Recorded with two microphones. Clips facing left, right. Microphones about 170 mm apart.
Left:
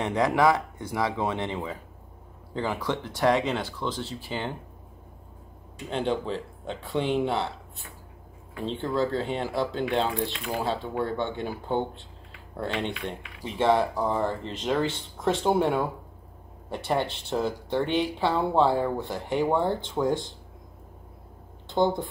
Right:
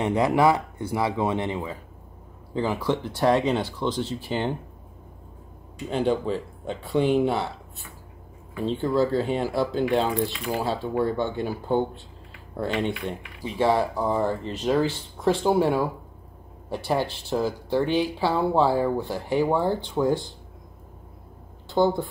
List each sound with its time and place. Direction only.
0.0 s speech: 10° right (ahead or behind)
5.9 s speech: 10° right (ahead or behind)
8.6 s speech: 10° right (ahead or behind)
13.4 s speech: 5° right (ahead or behind)